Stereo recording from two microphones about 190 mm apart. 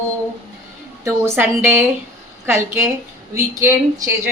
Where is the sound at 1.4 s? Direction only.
10° right (ahead or behind).